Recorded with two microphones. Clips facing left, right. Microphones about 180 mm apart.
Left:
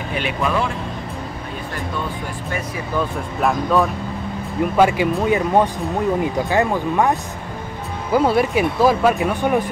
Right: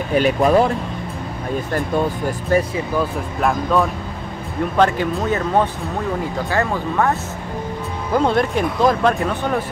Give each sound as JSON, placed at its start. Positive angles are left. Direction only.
{"t": 0.1, "sound": "speech", "side_deg": -40}
{"t": 3.3, "sound": "speech", "side_deg": 0}